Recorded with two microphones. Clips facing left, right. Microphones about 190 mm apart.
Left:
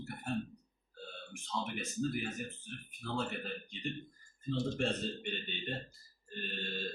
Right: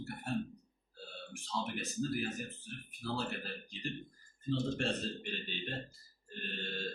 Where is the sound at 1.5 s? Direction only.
Centre (ahead or behind).